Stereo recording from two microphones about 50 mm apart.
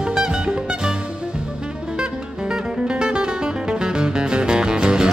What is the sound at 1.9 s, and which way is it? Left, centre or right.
Music, centre.